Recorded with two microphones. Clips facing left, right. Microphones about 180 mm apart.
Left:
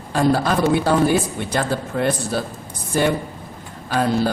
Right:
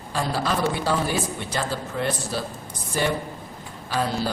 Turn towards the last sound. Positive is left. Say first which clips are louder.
# left 6 dB
turn(degrees=55)  # may be behind; listen again after turning